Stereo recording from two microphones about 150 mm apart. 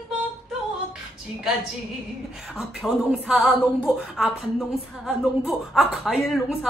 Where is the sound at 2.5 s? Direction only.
5° right (ahead or behind).